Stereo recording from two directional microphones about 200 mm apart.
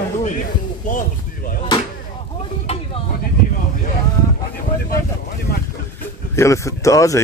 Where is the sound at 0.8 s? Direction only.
45° left (ahead or behind).